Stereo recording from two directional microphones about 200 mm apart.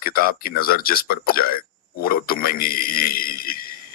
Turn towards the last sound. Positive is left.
turn(degrees=45)  # may be behind; listen again after turning